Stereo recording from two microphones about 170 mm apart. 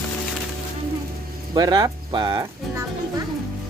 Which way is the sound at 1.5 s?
20° right (ahead or behind).